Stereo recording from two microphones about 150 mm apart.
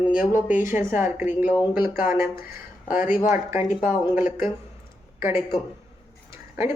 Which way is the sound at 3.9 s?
60° left (ahead or behind).